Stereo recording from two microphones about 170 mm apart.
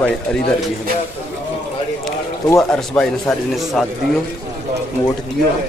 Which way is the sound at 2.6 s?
5° left (ahead or behind).